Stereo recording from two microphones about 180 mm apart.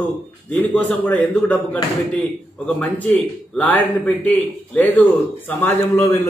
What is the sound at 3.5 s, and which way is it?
A man's voice, 10° left (ahead or behind).